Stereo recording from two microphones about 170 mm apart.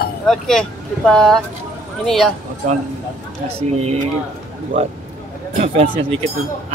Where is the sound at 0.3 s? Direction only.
5° left (ahead or behind).